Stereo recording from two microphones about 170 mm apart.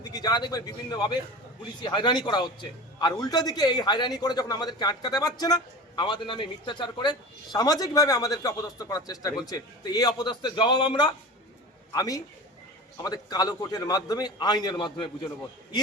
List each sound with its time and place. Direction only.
0.0 s a man's voice: 25° left (ahead or behind)